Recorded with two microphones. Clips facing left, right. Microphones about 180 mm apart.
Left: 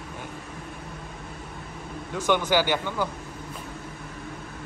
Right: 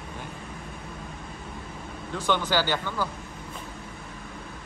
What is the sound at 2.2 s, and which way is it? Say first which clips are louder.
Speech: left 3 dB; 10° left (ahead or behind).